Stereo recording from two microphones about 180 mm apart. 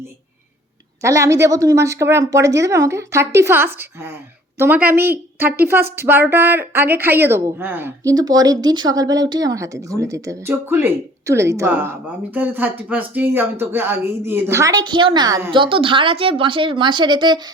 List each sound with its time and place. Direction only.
1.0 s a woman's voice: 15° right (ahead or behind)